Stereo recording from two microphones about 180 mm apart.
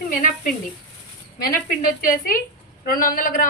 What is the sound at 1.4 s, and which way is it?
A woman's voice, 55° left (ahead or behind).